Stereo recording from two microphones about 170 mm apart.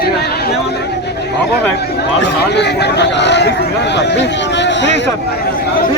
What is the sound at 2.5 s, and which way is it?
Speech, 80° left.